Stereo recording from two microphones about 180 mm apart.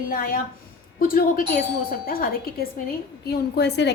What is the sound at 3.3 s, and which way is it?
Speech, 65° left (ahead or behind).